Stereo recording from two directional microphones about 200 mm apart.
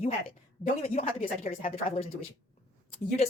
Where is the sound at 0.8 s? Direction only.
30° left (ahead or behind).